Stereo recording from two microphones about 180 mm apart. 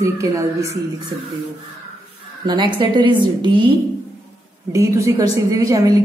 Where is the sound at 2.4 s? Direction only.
25° right (ahead or behind).